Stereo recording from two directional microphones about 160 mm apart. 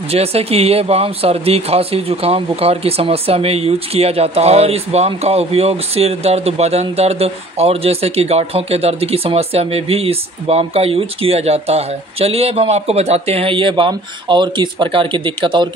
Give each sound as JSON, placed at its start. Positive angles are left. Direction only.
{"t": 0.1, "sound": "speech", "side_deg": -40}